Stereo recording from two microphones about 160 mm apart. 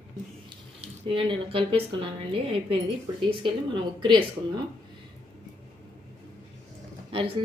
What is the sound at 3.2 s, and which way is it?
Speech, 35° right (ahead or behind).